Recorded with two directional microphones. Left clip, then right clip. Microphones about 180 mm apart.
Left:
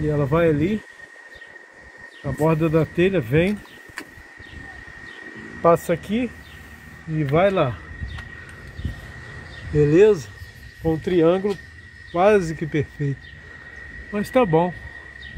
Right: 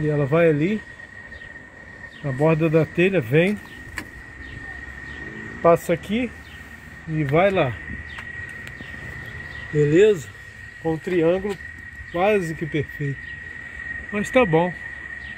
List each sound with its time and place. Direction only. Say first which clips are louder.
0.1 s speech: right 1 dB; 5° left (ahead or behind)
2.2 s speech: right 1 dB; centre (ahead or behind)
5.6 s speech: even; 10° left (ahead or behind)
7.2 s speech: even; 10° left (ahead or behind)
9.8 s speech: left 1 dB; 10° left (ahead or behind)
10.8 s speech: left 2 dB; 25° left (ahead or behind)
14.1 s speech: even; 10° left (ahead or behind)